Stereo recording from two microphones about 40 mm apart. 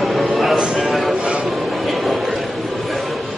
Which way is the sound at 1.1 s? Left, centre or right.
Right.